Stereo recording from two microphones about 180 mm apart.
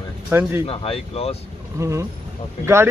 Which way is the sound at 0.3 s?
10° right (ahead or behind).